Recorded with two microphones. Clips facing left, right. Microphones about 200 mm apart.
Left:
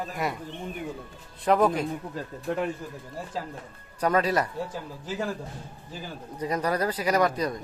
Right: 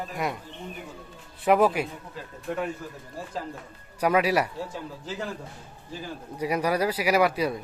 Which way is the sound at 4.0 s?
10° right (ahead or behind).